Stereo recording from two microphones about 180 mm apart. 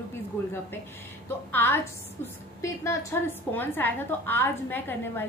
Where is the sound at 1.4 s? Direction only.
10° left (ahead or behind).